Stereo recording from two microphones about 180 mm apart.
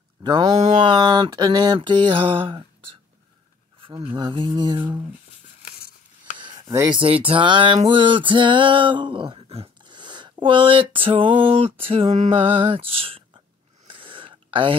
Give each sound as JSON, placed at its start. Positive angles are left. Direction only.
{"t": 0.2, "sound": "speech", "side_deg": -25}
{"t": 0.6, "sound": "music", "side_deg": -30}
{"t": 3.8, "sound": "music", "side_deg": -30}
{"t": 6.3, "sound": "a sound", "side_deg": -25}
{"t": 6.9, "sound": "music", "side_deg": -30}
{"t": 11.8, "sound": "speech", "side_deg": -30}
{"t": 13.8, "sound": "a sound", "side_deg": -30}